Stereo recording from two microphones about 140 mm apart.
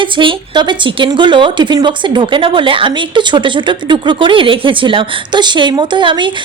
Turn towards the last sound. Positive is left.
turn(degrees=-35)  # may be behind; listen again after turning